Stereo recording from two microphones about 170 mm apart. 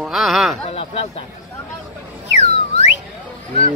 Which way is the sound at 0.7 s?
35° left (ahead or behind).